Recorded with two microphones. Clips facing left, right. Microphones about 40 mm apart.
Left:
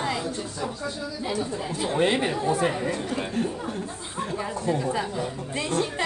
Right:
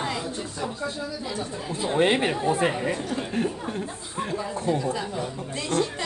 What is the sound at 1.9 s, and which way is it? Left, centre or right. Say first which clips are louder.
Speech: right 2 dB; right.